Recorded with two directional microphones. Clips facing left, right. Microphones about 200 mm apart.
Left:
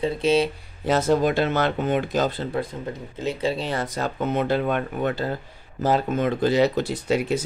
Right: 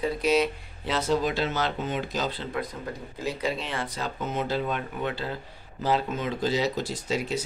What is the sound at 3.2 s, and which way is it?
Speech, 30° left (ahead or behind).